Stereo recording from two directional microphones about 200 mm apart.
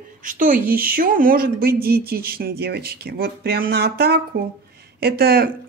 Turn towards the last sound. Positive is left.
turn(degrees=-50)  # may be behind; listen again after turning